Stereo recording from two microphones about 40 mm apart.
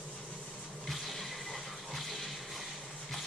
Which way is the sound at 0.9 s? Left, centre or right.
Centre.